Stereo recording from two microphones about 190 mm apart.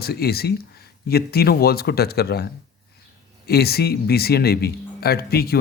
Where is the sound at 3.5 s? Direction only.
55° left (ahead or behind).